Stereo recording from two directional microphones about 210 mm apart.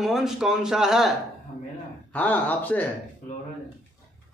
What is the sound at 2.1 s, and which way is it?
Speech, 10° left (ahead or behind).